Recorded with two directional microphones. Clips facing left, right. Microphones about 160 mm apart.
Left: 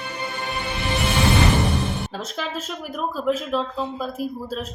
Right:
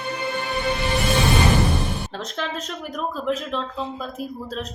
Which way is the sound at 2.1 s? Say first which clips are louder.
Even; 5° left (ahead or behind).